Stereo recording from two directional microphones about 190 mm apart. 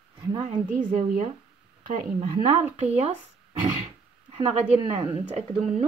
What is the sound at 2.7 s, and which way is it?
Speech, 35° right (ahead or behind).